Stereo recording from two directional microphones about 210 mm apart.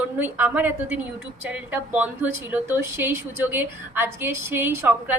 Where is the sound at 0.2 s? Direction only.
10° right (ahead or behind).